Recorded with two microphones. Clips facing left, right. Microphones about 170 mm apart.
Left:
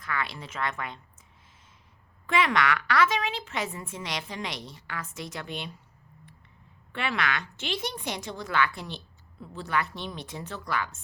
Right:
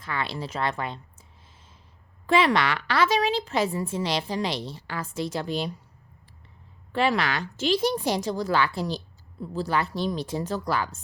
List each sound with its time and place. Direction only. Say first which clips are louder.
0.0 s a woman's voice: right 3 dB; 30° right (ahead or behind)
2.2 s a woman's voice: right 4 dB; 35° right (ahead or behind)
6.9 s a woman's voice: right 6 dB; 35° right (ahead or behind)